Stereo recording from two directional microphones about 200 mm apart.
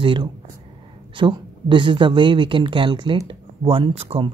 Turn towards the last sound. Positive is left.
turn(degrees=-30)  # may be behind; listen again after turning